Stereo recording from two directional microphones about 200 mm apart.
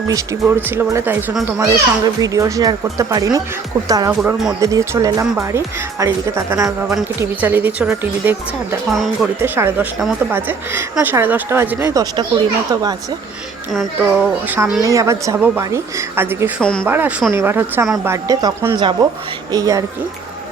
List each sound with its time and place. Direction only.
0.1 s speech: 15° right (ahead or behind)
4.2 s speech: centre (ahead or behind)
4.6 s speech: 15° right (ahead or behind)
13.7 s speech: 5° right (ahead or behind)
16.6 s speech: 5° left (ahead or behind)
16.8 s speech: 10° right (ahead or behind)